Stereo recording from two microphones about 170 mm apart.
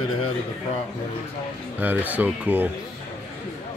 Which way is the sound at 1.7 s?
10° right (ahead or behind).